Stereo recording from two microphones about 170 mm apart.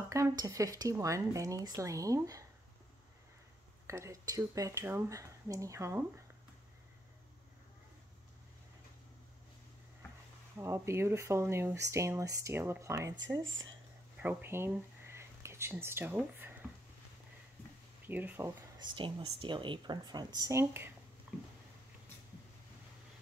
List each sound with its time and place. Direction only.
0.1 s speech: 20° right (ahead or behind)
3.8 s speech: 15° right (ahead or behind)
10.6 s speech: 15° right (ahead or behind)
13.5 s speech: 90° right
14.1 s speech: 10° right (ahead or behind)
18.0 s speech: 10° right (ahead or behind)
18.8 s speech: 30° right (ahead or behind); by 20.9 s 15° right (ahead or behind)
21.3 s a sound: 5° right (ahead or behind)